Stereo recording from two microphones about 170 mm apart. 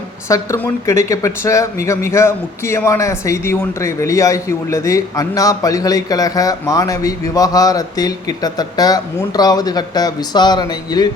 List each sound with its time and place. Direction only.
0.3 s a woman's voice: 15° left (ahead or behind)